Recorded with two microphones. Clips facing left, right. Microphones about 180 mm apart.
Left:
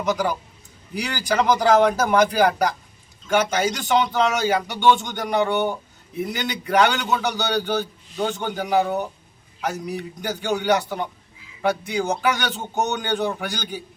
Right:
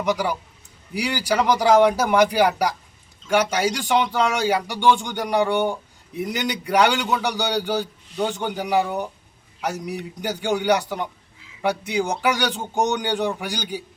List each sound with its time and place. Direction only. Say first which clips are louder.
0.1 s a man's voice: left 1 dB; 10° right (ahead or behind)